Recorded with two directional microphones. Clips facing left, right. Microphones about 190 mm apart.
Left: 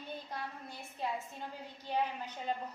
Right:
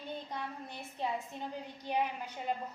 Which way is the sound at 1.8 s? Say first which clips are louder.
Right 1 dB; 15° right (ahead or behind).